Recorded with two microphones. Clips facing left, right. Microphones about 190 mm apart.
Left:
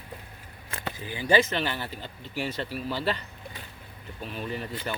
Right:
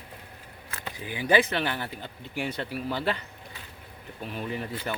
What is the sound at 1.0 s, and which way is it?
Speech, 15° right (ahead or behind).